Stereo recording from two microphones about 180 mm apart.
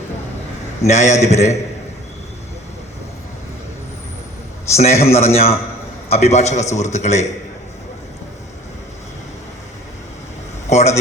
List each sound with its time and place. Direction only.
0.8 s a man's voice: 40° left (ahead or behind)
4.8 s a man's voice: 35° left (ahead or behind)
10.7 s a man's voice: 40° left (ahead or behind)